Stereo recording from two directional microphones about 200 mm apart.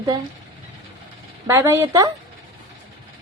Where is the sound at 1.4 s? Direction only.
15° right (ahead or behind).